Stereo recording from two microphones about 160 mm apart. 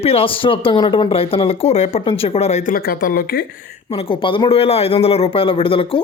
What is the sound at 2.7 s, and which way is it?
Speech, 70° left (ahead or behind).